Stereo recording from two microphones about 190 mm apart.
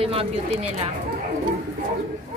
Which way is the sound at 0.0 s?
30° right (ahead or behind).